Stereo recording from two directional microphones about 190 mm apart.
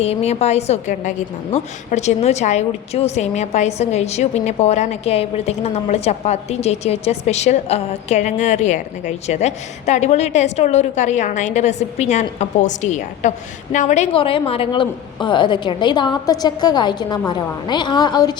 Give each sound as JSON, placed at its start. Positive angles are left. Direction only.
{"t": 0.0, "sound": "a woman's voice", "side_deg": 35}